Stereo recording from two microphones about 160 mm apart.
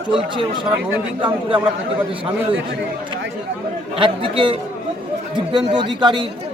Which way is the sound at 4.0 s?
35° right (ahead or behind).